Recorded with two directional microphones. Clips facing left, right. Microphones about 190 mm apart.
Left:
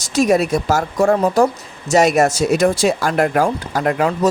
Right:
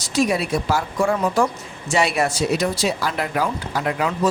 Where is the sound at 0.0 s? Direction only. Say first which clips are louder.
Left 5 dB; 45° left (ahead or behind).